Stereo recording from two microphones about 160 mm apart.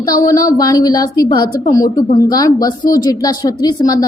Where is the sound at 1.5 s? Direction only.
65° left (ahead or behind).